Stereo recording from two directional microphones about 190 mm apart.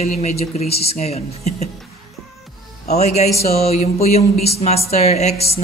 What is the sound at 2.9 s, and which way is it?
Speech, 35° left (ahead or behind).